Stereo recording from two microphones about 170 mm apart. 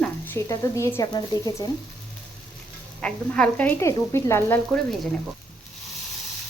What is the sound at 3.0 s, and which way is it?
Speech, 5° left (ahead or behind).